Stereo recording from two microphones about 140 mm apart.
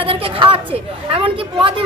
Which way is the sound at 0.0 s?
40° right (ahead or behind).